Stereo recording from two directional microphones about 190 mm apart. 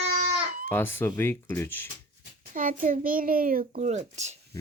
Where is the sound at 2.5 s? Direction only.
45° right (ahead or behind).